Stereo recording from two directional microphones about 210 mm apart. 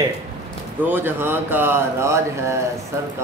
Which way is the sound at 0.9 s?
10° right (ahead or behind).